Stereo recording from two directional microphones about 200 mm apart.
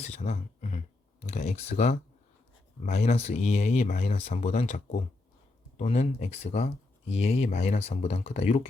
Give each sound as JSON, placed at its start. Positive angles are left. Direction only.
{"t": 0.0, "sound": "speech", "side_deg": 35}